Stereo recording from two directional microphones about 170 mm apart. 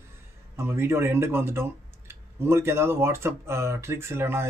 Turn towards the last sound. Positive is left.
turn(degrees=-15)  # may be behind; listen again after turning